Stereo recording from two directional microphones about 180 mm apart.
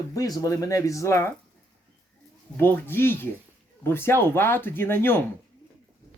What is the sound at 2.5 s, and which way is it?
Speech, 10° left (ahead or behind).